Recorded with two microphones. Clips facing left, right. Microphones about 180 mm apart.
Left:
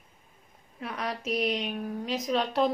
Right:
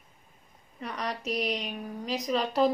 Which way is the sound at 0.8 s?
Centre (ahead or behind).